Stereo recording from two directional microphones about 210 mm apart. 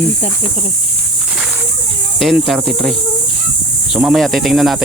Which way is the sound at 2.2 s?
Centre (ahead or behind).